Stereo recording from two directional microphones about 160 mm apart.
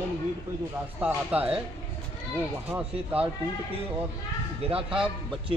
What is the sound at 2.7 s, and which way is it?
Speech, 10° right (ahead or behind).